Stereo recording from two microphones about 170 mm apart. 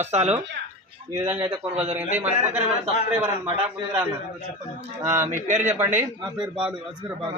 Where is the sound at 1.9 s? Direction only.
10° right (ahead or behind).